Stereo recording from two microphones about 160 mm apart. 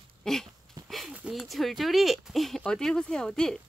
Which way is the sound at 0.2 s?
Centre (ahead or behind).